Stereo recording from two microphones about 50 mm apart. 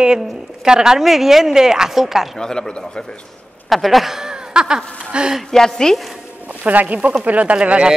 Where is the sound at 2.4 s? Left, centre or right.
Centre.